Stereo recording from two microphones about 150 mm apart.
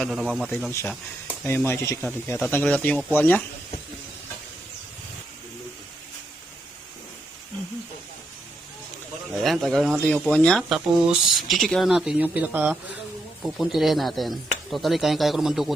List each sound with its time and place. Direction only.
0.0 s speech: centre (ahead or behind)
9.3 s speech: centre (ahead or behind)